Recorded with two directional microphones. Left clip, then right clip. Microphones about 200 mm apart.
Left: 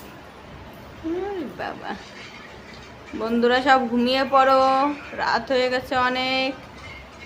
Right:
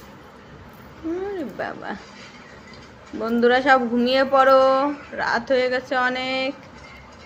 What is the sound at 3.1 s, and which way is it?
Speech, 15° right (ahead or behind).